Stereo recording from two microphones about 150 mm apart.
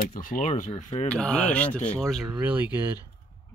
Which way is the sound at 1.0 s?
5° left (ahead or behind).